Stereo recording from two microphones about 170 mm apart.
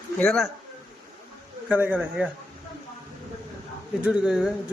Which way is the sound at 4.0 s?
5° right (ahead or behind).